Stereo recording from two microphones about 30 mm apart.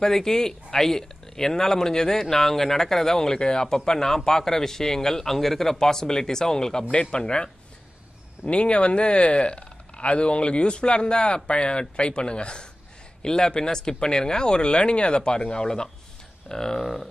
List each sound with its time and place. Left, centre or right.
0.0 s speech: centre
3.2 s speech: left; by 5.8 s centre
5.8 s speech: centre
8.5 s speech: left; by 17.1 s centre